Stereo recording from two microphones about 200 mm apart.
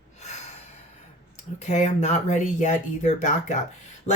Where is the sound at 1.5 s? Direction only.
35° left (ahead or behind).